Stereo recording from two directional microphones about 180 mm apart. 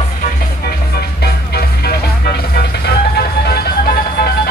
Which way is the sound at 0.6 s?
60° left (ahead or behind).